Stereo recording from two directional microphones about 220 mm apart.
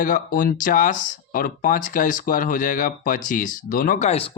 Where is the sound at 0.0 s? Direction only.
40° left (ahead or behind).